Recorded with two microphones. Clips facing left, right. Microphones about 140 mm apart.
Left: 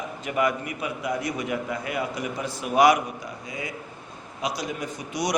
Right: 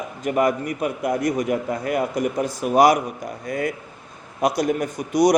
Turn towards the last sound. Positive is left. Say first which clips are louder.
# right 10 dB
turn(degrees=-45)  # may be behind; listen again after turning